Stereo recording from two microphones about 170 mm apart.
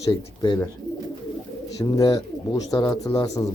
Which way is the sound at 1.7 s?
20° left (ahead or behind).